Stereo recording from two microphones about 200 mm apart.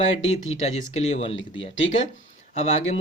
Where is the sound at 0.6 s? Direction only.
30° left (ahead or behind).